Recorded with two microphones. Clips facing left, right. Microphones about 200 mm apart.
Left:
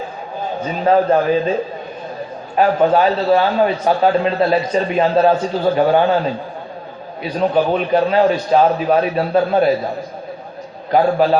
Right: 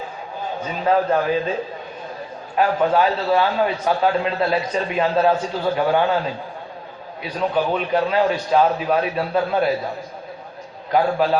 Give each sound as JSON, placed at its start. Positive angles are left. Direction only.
{"t": 0.6, "sound": "a man's voice", "side_deg": 30}
{"t": 2.6, "sound": "a man's voice", "side_deg": 30}
{"t": 10.9, "sound": "a man's voice", "side_deg": 25}